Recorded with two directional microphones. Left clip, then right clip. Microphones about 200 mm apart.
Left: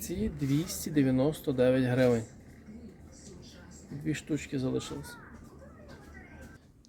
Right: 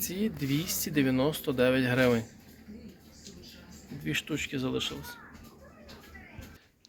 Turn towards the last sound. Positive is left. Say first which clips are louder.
# right 2 dB
turn(degrees=20)  # may be behind; listen again after turning